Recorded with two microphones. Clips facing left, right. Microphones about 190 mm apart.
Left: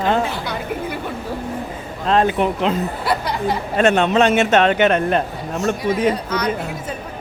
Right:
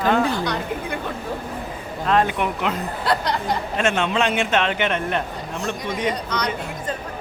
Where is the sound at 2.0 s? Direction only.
30° left (ahead or behind).